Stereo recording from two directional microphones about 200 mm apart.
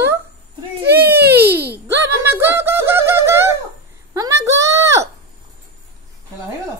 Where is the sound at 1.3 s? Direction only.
10° right (ahead or behind).